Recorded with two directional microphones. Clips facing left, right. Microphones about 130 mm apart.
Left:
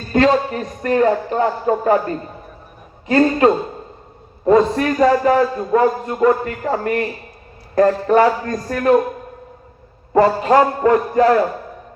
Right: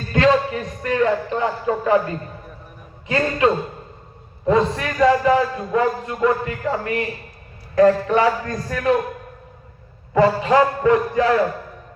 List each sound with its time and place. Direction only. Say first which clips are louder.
0.1 s a man's voice: left 2 dB; 40° left (ahead or behind)
3.1 s a man's voice: left 5 dB; 45° left (ahead or behind)
10.2 s a man's voice: left 2 dB; 45° left (ahead or behind)